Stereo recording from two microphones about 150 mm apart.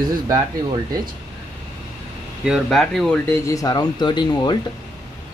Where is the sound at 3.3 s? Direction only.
20° left (ahead or behind).